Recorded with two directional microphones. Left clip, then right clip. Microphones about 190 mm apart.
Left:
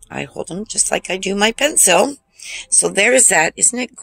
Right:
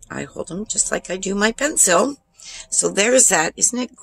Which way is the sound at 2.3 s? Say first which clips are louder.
Left 7 dB; centre (ahead or behind).